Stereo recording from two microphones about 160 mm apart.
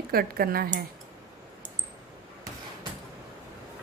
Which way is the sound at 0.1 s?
70° right (ahead or behind).